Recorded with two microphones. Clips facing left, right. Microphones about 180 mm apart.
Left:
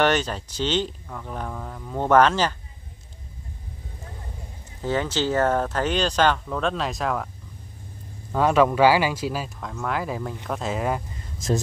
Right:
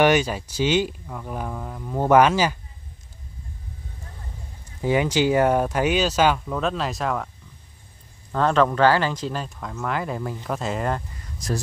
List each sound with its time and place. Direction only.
0.0 s speech: 10° right (ahead or behind)
4.8 s speech: 15° right (ahead or behind)
8.3 s speech: 10° left (ahead or behind)
11.3 s speech: 25° left (ahead or behind)